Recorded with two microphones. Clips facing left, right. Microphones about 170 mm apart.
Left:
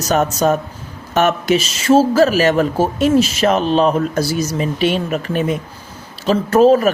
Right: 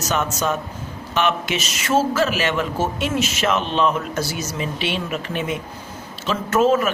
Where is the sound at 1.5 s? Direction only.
30° left (ahead or behind).